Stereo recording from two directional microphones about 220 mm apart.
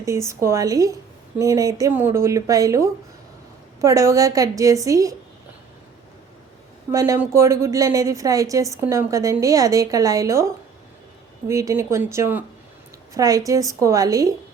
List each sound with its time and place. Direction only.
0.0 s a woman's voice: 15° right (ahead or behind)
6.9 s a woman's voice: 15° right (ahead or behind)